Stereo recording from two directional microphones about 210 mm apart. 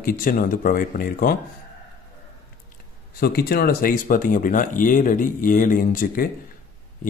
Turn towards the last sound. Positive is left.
turn(degrees=40)  # may be behind; listen again after turning